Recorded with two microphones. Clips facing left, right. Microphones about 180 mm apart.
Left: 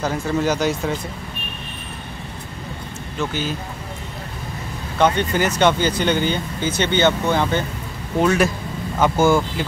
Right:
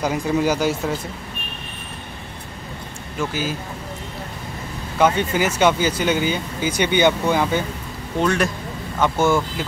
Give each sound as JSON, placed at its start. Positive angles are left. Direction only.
{"t": 0.0, "sound": "speech", "side_deg": -10}
{"t": 3.2, "sound": "speech", "side_deg": -5}
{"t": 4.9, "sound": "speech", "side_deg": -5}
{"t": 8.2, "sound": "speech", "side_deg": 5}